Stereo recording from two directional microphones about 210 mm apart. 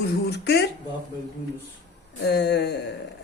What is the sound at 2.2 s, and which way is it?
Speech, 50° left (ahead or behind).